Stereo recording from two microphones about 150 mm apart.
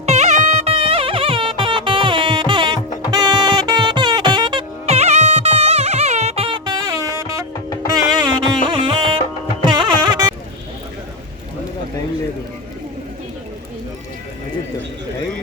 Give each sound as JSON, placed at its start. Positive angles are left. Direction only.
{"t": 0.0, "sound": "music", "side_deg": -45}
{"t": 4.9, "sound": "music", "side_deg": -50}